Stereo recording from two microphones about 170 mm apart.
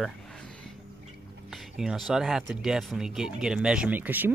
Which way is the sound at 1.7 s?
Centre (ahead or behind).